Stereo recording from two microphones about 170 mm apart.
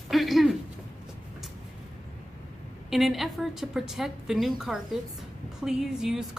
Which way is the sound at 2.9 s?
Centre (ahead or behind).